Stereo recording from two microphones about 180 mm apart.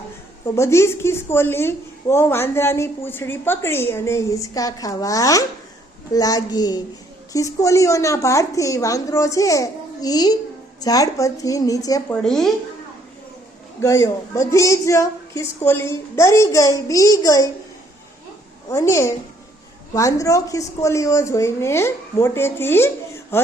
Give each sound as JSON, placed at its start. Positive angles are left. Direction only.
{"t": 0.5, "sound": "a woman's voice", "side_deg": 15}
{"t": 12.1, "sound": "a woman's voice", "side_deg": 5}
{"t": 13.8, "sound": "a woman's voice", "side_deg": 15}
{"t": 18.7, "sound": "a woman's voice", "side_deg": 15}